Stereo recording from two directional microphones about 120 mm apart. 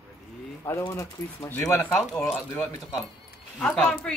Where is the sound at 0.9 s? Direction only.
25° left (ahead or behind).